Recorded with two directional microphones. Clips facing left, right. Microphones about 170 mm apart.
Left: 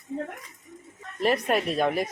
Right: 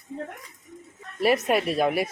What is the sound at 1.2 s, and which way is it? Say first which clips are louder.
Speech: right 2 dB; 5° right (ahead or behind).